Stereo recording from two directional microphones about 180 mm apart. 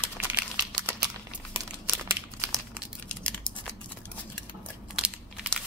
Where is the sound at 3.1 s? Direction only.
5° left (ahead or behind).